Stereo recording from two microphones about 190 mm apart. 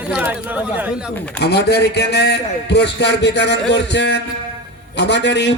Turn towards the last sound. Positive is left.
turn(degrees=65)  # may be behind; listen again after turning